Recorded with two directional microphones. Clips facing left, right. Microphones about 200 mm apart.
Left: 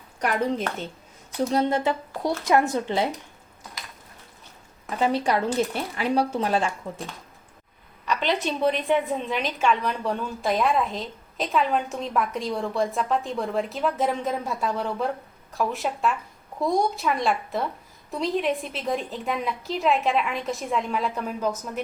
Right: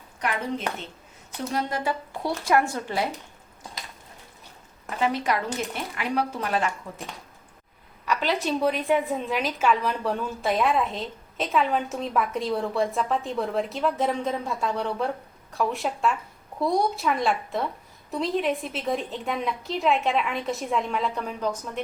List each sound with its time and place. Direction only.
1.5 s speech: 25° left (ahead or behind)
4.9 s speech: 30° left (ahead or behind)
8.0 s a woman's voice: 5° right (ahead or behind)